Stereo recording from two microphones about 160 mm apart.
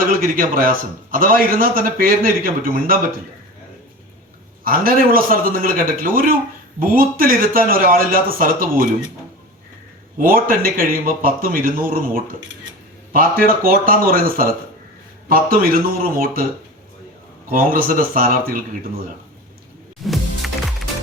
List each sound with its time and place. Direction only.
0.0 s a man's voice: 60° right (ahead or behind)
4.6 s a man's voice: 65° right (ahead or behind)
10.2 s a man's voice: 60° right (ahead or behind)
17.5 s a man's voice: 60° right (ahead or behind)
20.1 s music: centre (ahead or behind)